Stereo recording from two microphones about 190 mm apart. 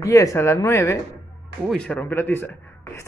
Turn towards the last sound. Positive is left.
turn(degrees=15)  # may be behind; listen again after turning